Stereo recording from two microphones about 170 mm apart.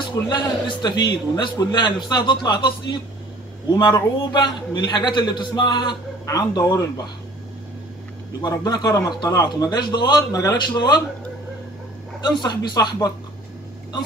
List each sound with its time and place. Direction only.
0.1 s a man's voice: 25° left (ahead or behind)
3.7 s a man's voice: 25° left (ahead or behind)
8.4 s a man's voice: 25° left (ahead or behind)
12.2 s a man's voice: 25° left (ahead or behind)